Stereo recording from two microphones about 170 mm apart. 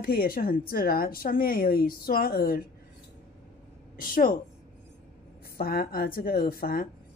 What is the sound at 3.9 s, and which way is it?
Speech, 55° left (ahead or behind).